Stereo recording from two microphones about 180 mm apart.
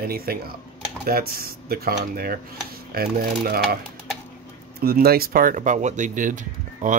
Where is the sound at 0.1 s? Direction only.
55° right (ahead or behind).